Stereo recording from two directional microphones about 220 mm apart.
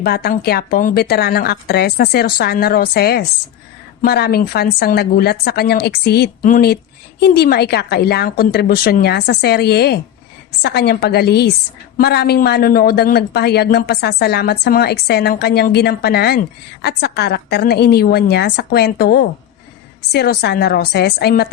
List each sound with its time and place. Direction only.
0.0 s speech: 45° left (ahead or behind)